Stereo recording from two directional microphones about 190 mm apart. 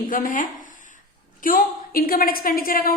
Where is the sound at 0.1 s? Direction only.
45° left (ahead or behind).